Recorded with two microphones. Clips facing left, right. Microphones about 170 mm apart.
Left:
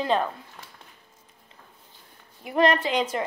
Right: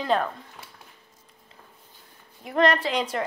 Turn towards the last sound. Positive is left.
turn(degrees=0)  # may be behind; listen again after turning